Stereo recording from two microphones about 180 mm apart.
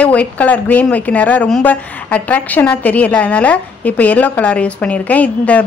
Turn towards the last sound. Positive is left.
turn(degrees=10)  # may be behind; listen again after turning